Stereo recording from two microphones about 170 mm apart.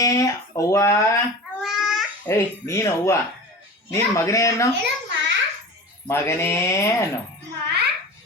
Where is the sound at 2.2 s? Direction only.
15° left (ahead or behind).